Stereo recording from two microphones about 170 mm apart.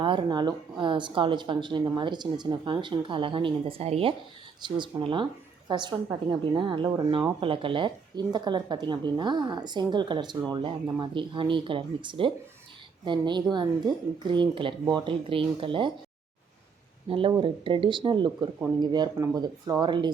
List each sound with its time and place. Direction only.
0.0 s speech: 30° right (ahead or behind)
17.1 s speech: 30° right (ahead or behind)